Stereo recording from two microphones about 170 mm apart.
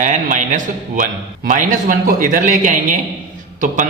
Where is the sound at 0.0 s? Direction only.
45° right (ahead or behind).